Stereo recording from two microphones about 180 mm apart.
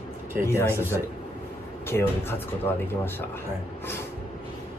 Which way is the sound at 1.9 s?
10° left (ahead or behind).